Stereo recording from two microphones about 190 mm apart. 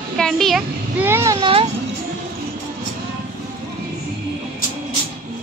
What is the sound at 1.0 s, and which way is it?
Speech, 15° right (ahead or behind).